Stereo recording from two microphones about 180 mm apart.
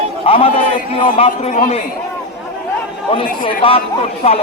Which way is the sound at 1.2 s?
40° left (ahead or behind).